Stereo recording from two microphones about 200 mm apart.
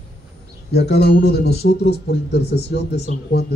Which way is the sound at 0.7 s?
55° left (ahead or behind).